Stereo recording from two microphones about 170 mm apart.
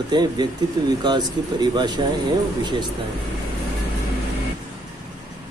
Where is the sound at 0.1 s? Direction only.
25° right (ahead or behind).